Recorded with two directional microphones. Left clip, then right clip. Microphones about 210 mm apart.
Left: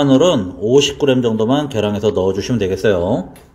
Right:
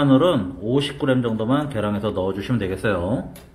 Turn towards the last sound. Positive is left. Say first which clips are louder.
# left 8 dB
turn(degrees=15)  # may be behind; listen again after turning